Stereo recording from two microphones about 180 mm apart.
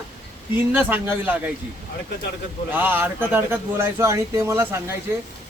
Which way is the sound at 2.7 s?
10° right (ahead or behind).